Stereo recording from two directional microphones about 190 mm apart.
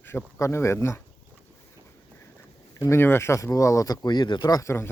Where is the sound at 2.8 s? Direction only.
15° left (ahead or behind).